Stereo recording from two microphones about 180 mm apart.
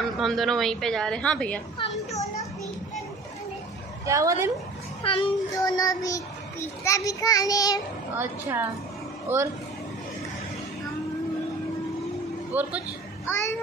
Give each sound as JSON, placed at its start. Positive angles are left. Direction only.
{"t": 0.0, "sound": "a woman's voice", "side_deg": 0}
{"t": 1.8, "sound": "children playing", "side_deg": 30}
{"t": 4.0, "sound": "speech", "side_deg": -15}
{"t": 5.0, "sound": "a child's voice", "side_deg": 25}
{"t": 7.1, "sound": "child singing", "side_deg": 20}
{"t": 8.2, "sound": "speech", "side_deg": -10}
{"t": 12.5, "sound": "speech", "side_deg": -10}
{"t": 13.3, "sound": "a child's voice", "side_deg": 15}